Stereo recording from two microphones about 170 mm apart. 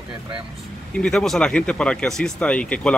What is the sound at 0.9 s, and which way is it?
Speech, 5° left (ahead or behind).